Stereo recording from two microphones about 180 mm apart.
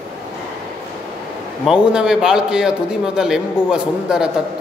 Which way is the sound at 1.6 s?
5° right (ahead or behind).